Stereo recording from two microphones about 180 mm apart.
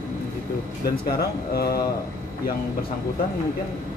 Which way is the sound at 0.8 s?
60° left (ahead or behind).